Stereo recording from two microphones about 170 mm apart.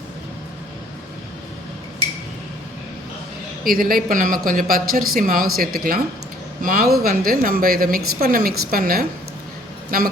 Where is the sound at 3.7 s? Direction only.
55° right (ahead or behind).